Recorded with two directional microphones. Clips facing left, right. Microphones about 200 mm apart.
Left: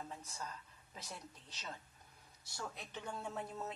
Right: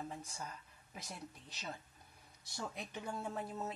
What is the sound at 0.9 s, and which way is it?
Speech, 10° right (ahead or behind).